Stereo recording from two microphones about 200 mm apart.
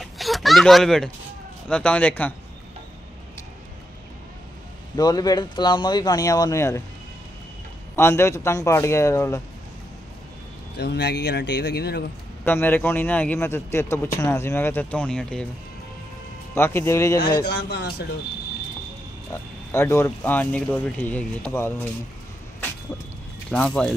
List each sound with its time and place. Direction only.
0.0 s a sound: centre (ahead or behind)
1.7 s a man's voice: 5° left (ahead or behind)
4.9 s speech: 20° left (ahead or behind)
7.9 s a man's voice: 15° left (ahead or behind)
10.8 s speech: 55° left (ahead or behind)
12.4 s a man's voice: 10° left (ahead or behind)
16.5 s a man's voice: 10° left (ahead or behind)
17.5 s speech: 55° left (ahead or behind)
19.3 s a man's voice: 15° left (ahead or behind)
23.5 s speech: 5° left (ahead or behind)